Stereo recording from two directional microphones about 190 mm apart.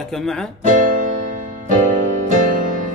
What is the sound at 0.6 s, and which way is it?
Music, 40° right (ahead or behind).